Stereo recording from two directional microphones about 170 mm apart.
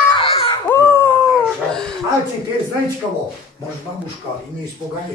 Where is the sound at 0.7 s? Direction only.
15° left (ahead or behind).